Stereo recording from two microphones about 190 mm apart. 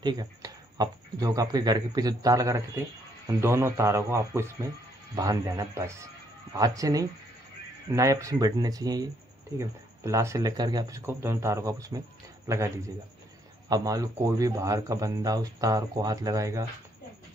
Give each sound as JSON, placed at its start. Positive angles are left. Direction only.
{"t": 0.0, "sound": "speech", "side_deg": -20}